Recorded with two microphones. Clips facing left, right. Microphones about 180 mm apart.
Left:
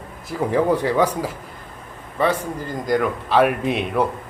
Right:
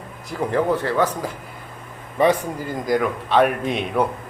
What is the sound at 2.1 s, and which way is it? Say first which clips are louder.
Speech: right 3 dB; 15° right (ahead or behind).